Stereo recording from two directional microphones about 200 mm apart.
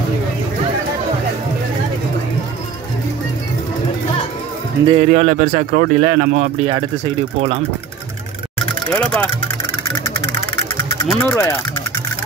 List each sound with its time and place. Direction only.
4.8 s speech: 35° right (ahead or behind)
8.9 s speech: 5° left (ahead or behind)
11.1 s speech: 10° left (ahead or behind)